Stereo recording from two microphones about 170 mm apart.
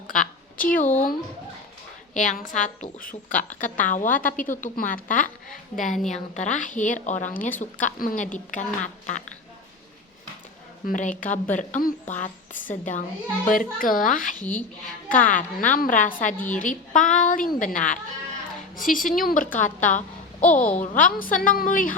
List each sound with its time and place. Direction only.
0.1 s a sound: 50° left (ahead or behind)
0.8 s a woman's voice: 10° left (ahead or behind)
2.1 s a woman's voice: 50° left (ahead or behind)
10.8 s a woman's voice: 50° left (ahead or behind)
20.4 s a woman's voice: 10° left (ahead or behind)
20.7 s a woman's voice: 50° left (ahead or behind)